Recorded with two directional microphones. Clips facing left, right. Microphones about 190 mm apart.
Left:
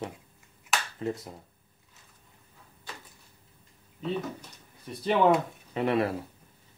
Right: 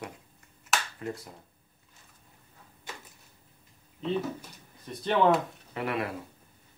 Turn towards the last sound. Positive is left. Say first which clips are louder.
# left 6 dB
turn(degrees=25)  # may be behind; listen again after turning